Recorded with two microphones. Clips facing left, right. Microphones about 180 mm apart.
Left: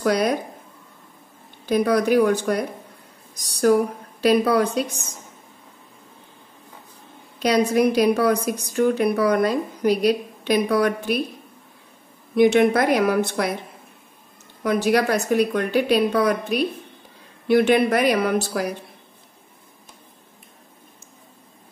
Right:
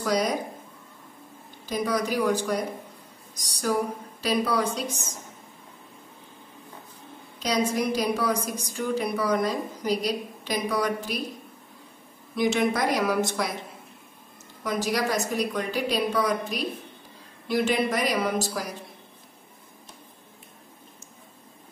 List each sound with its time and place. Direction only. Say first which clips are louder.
0.0 s a woman's voice: left 5 dB; 65° left (ahead or behind)
1.7 s a woman's voice: left 8 dB; 60° left (ahead or behind)
4.2 s a woman's voice: left 8 dB; 60° left (ahead or behind)
7.4 s a woman's voice: left 7 dB; 65° left (ahead or behind)
12.4 s a woman's voice: left 8 dB; 60° left (ahead or behind)
14.6 s a woman's voice: left 7 dB; 60° left (ahead or behind)